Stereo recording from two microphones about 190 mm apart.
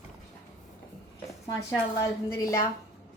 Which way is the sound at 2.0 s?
15° left (ahead or behind).